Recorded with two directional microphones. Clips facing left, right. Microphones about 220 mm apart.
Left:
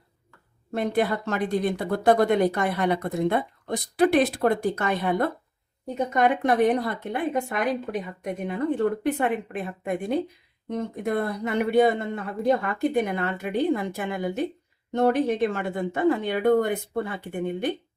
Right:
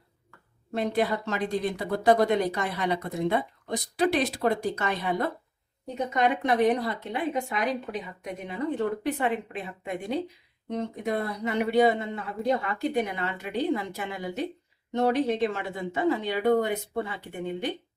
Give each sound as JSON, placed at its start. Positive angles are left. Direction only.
{"t": 0.7, "sound": "a woman's voice", "side_deg": 50}